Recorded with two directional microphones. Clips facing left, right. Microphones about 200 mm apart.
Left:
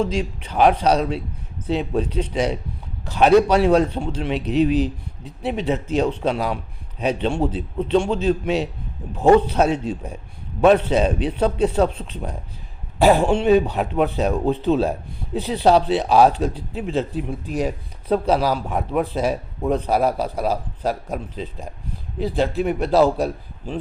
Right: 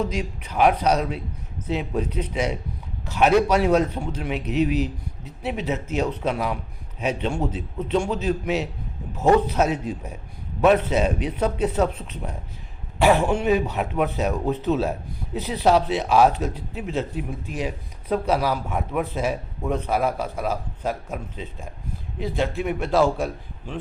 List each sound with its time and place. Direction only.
0.0 s a man's voice: 30° left (ahead or behind)
18.1 s a man's voice: 30° left (ahead or behind)